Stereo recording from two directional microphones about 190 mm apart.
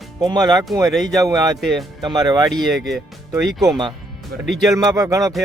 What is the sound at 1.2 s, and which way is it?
Speech, 15° right (ahead or behind).